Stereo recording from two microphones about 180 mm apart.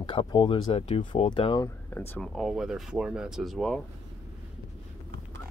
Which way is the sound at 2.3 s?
Centre (ahead or behind).